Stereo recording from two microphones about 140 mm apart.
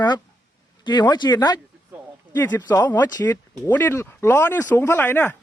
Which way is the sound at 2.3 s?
15° left (ahead or behind).